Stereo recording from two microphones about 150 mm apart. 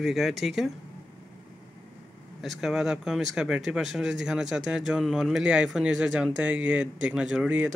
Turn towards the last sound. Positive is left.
turn(degrees=-10)  # may be behind; listen again after turning